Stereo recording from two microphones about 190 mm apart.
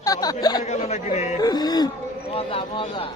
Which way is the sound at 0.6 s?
35° left (ahead or behind).